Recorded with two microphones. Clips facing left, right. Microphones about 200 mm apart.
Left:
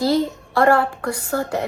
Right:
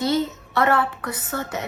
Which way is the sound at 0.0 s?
35° left (ahead or behind).